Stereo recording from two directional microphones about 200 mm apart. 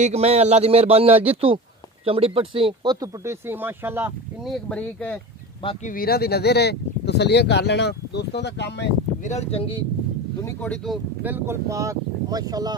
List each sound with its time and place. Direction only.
0.0 s a man's voice: 30° right (ahead or behind); by 4.1 s 10° right (ahead or behind)
4.5 s speech: 5° left (ahead or behind)
5.9 s speech: 50° left (ahead or behind)
9.2 s speech: 35° left (ahead or behind)
10.4 s speech: 5° left (ahead or behind)
11.2 s speech: 10° right (ahead or behind)